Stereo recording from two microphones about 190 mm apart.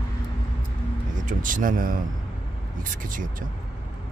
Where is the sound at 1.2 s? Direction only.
45° right (ahead or behind).